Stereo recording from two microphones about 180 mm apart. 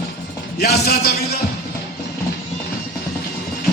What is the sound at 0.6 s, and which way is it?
Speech, 60° left (ahead or behind).